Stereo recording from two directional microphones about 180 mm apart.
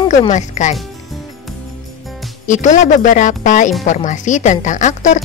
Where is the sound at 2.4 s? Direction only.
45° left (ahead or behind).